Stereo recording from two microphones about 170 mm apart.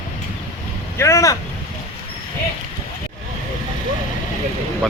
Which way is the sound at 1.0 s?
15° left (ahead or behind).